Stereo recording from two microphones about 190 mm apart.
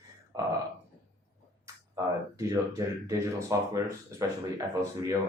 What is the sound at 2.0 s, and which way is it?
Speech, 15° right (ahead or behind).